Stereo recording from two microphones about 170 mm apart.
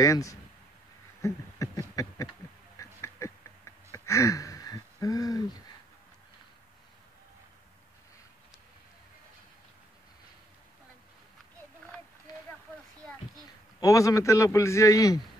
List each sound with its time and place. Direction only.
0.0 s a man's voice: 20° left (ahead or behind)
1.2 s a sound: 20° left (ahead or behind)
13.7 s a man's voice: 20° left (ahead or behind)